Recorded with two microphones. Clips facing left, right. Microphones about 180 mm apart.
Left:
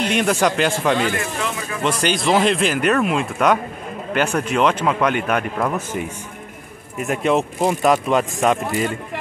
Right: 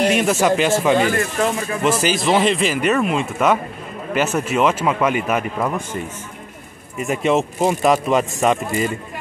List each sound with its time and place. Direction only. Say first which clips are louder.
0.1 s speech: right 2 dB; 5° right (ahead or behind)
0.9 s speech: right 4 dB; 45° right (ahead or behind)
1.8 s speech: right 1 dB; 5° right (ahead or behind)
7.0 s speech: right 1 dB; centre (ahead or behind)